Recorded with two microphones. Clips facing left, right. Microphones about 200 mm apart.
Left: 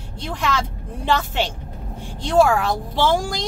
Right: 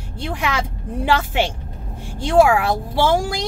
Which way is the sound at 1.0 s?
10° right (ahead or behind).